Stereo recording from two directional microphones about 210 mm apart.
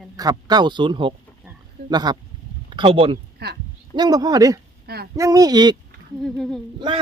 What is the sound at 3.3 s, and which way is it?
Speech, 50° right (ahead or behind).